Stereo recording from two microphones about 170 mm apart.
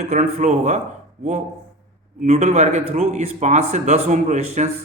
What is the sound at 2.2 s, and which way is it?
Speech, 40° right (ahead or behind).